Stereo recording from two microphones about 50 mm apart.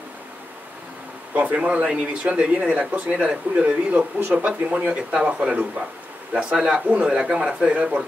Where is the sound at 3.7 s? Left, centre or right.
Right.